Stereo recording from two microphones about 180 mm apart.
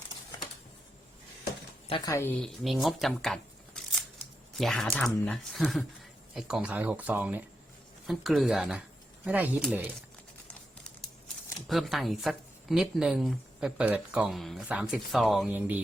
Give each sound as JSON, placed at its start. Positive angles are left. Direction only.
{"t": 1.9, "sound": "speech", "side_deg": 15}
{"t": 2.4, "sound": "a woman's voice", "side_deg": 0}
{"t": 11.7, "sound": "a woman's voice", "side_deg": 0}